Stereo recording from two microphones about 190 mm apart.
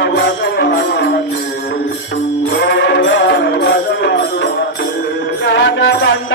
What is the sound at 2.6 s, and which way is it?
Music, 65° left (ahead or behind).